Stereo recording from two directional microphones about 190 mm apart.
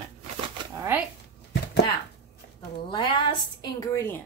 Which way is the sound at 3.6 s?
15° left (ahead or behind).